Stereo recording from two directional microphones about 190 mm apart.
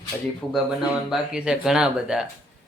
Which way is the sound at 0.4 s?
5° left (ahead or behind).